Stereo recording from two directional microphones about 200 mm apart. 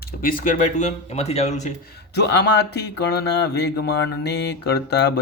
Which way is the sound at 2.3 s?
55° left (ahead or behind).